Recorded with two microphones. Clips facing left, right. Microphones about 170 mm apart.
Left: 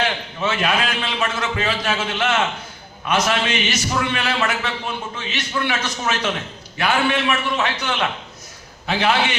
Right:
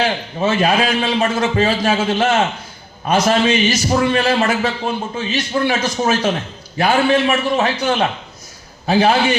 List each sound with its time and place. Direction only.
0.0 s a man's voice: 35° right (ahead or behind)